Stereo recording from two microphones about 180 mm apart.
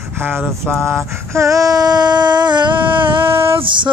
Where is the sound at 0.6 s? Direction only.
15° right (ahead or behind).